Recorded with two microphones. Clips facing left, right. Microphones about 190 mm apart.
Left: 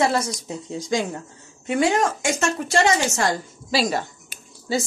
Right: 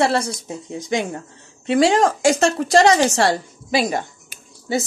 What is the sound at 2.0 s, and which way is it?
Speech, 35° right (ahead or behind).